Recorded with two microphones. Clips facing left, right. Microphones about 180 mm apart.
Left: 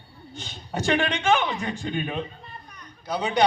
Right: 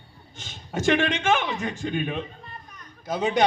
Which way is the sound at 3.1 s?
45° right (ahead or behind).